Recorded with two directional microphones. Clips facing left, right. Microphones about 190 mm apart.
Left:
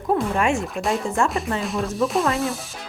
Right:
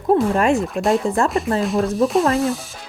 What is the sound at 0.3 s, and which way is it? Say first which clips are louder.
Speech: right 4 dB; 35° right (ahead or behind).